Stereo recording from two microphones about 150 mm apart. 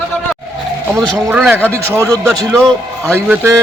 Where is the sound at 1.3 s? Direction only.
10° right (ahead or behind).